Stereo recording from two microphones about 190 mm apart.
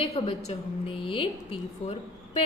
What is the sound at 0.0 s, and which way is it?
A woman's voice, 30° left (ahead or behind).